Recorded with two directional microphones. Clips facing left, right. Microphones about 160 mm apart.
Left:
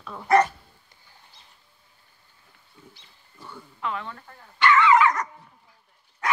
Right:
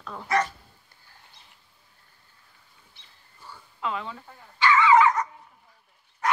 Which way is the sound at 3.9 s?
5° right (ahead or behind).